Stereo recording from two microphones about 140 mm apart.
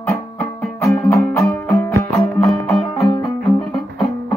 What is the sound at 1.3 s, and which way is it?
Music, 20° left (ahead or behind).